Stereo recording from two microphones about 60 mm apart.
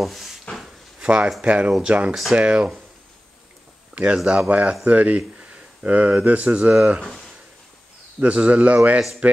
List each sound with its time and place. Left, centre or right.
0.0 s a sound: centre
1.0 s a man's voice: right
3.9 s a man's voice: centre
7.0 s speech: centre
8.2 s a man's voice: right